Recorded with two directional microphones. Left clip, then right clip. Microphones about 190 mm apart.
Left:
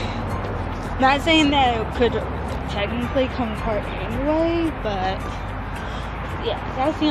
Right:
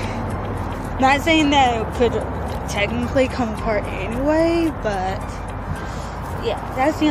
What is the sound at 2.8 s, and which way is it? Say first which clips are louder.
Speech: right 3 dB; 35° right (ahead or behind).